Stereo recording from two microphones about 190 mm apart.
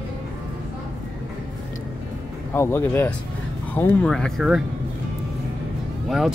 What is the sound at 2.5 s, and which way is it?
Speech, 10° left (ahead or behind).